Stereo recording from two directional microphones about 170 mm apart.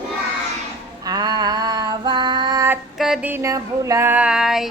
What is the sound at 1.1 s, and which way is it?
Female singing, 25° right (ahead or behind).